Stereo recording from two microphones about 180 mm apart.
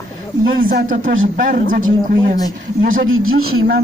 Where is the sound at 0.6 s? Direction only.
50° right (ahead or behind).